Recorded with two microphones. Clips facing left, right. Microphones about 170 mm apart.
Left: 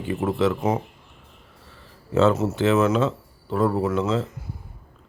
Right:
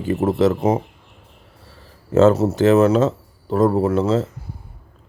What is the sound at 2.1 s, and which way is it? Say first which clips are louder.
Speech: right 5 dB; 40° right (ahead or behind).